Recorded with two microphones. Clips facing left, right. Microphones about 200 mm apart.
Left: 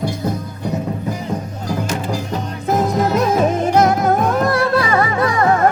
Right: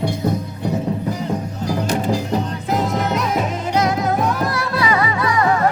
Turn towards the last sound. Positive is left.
turn(degrees=50)  # may be behind; listen again after turning